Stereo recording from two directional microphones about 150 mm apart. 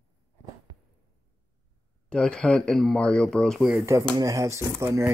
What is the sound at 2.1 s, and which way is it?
Speech, 5° left (ahead or behind).